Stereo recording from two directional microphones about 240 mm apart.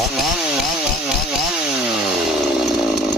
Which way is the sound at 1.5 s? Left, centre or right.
Centre.